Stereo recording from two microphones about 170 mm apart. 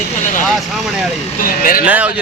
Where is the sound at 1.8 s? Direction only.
10° right (ahead or behind).